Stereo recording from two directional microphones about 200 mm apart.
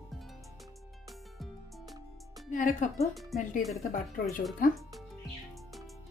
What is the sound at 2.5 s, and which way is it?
Speech, 40° left (ahead or behind).